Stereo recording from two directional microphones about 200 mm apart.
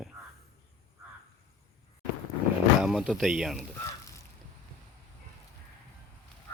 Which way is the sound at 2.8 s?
Centre (ahead or behind).